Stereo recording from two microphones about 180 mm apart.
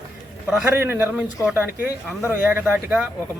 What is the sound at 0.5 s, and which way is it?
Speech, 10° right (ahead or behind).